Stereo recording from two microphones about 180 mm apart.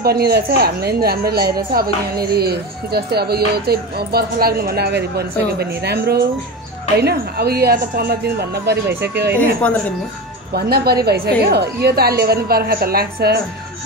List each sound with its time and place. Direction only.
0.0 s speech: 60° right (ahead or behind)
9.6 s speech: 10° left (ahead or behind)
10.5 s speech: 60° right (ahead or behind)